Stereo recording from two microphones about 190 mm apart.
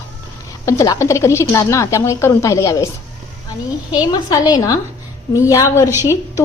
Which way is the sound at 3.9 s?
20° left (ahead or behind).